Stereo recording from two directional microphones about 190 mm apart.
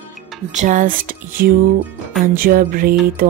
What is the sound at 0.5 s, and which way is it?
Speech, 40° right (ahead or behind).